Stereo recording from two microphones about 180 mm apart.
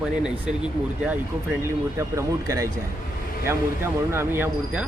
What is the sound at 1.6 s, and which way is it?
Speech, 15° right (ahead or behind).